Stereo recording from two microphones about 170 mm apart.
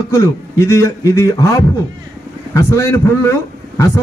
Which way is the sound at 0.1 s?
15° left (ahead or behind).